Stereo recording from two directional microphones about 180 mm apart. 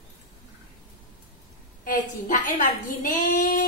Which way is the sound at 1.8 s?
45° left (ahead or behind).